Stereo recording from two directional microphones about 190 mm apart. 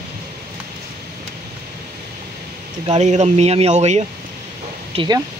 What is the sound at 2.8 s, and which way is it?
Speech, 35° right (ahead or behind).